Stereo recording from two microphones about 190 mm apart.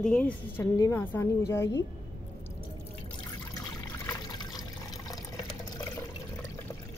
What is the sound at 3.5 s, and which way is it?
Trickle, 15° left (ahead or behind).